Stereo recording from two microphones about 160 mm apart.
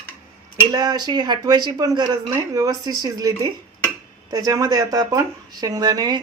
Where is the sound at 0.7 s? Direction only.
25° right (ahead or behind).